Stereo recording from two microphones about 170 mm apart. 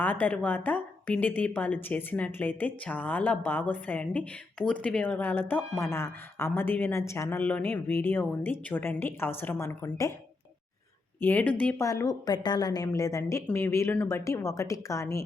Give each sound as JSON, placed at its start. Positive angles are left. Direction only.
{"t": 0.0, "sound": "a woman's voice", "side_deg": 10}
{"t": 11.2, "sound": "a woman's voice", "side_deg": 10}
{"t": 11.9, "sound": "a woman's voice", "side_deg": 20}